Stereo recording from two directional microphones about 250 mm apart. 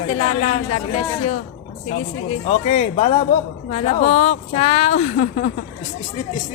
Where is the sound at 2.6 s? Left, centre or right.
Left.